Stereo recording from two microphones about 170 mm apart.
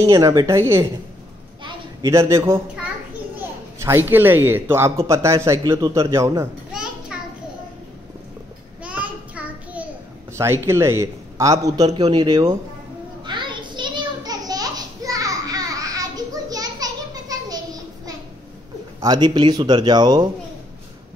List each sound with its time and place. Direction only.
0.0 s speech: 20° right (ahead or behind)
1.6 s a sound: 20° right (ahead or behind)
3.3 s speech: 15° right (ahead or behind)
6.7 s children playing: 5° right (ahead or behind)
8.8 s a sound: 10° right (ahead or behind)
10.3 s a man's voice: 15° right (ahead or behind)
12.0 s speech: 35° right (ahead or behind)
13.2 s a sound: 25° right (ahead or behind)
18.9 s speech: 25° right (ahead or behind)